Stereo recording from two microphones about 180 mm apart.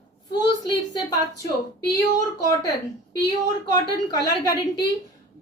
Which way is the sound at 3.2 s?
20° left (ahead or behind).